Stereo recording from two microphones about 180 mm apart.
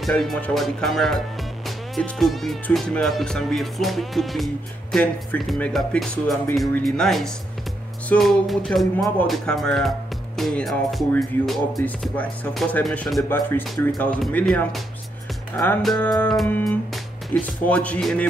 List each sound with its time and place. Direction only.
0.0 s speech: centre (ahead or behind)